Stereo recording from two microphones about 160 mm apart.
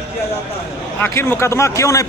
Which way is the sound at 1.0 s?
15° left (ahead or behind).